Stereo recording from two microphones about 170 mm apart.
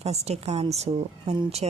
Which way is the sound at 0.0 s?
40° right (ahead or behind).